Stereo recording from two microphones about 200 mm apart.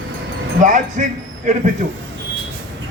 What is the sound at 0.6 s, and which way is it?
A man's voice, 40° right (ahead or behind).